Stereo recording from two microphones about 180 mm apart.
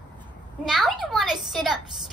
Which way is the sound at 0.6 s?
Centre (ahead or behind).